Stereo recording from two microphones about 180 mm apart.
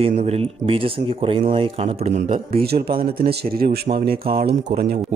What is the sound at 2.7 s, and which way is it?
A man's voice, 55° right (ahead or behind).